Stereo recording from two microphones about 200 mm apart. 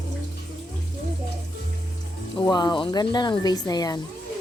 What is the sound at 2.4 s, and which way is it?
A woman's voice, 20° left (ahead or behind).